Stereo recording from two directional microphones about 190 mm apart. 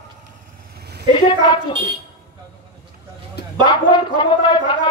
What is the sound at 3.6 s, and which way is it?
A man's voice, 25° left (ahead or behind).